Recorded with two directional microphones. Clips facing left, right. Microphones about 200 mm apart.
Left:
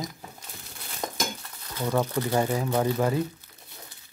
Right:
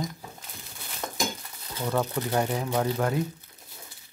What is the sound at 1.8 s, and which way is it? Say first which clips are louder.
Speech: left 2 dB; 10° left (ahead or behind).